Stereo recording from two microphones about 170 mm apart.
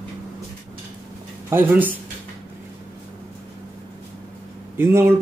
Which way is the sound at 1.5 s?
10° right (ahead or behind).